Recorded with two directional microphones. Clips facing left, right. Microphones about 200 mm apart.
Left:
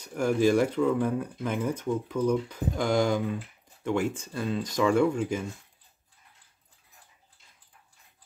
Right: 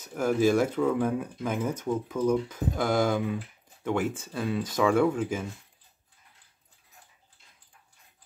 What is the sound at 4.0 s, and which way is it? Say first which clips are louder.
Speech: even; 5° right (ahead or behind).